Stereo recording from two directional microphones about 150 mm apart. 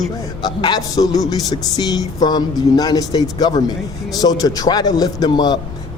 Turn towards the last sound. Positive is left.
turn(degrees=30)  # may be behind; listen again after turning